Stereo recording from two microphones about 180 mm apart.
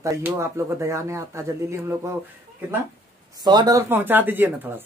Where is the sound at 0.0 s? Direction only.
15° right (ahead or behind).